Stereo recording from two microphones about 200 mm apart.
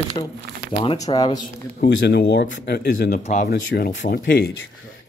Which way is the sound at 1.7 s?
55° left (ahead or behind).